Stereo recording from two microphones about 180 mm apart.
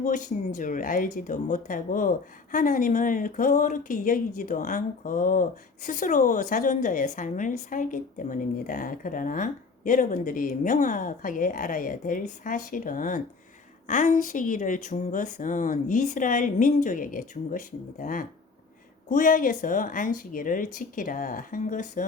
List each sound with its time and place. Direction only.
0.0 s speech: 45° left (ahead or behind)